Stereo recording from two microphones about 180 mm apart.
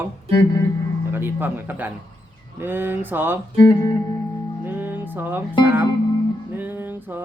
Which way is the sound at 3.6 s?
20° left (ahead or behind).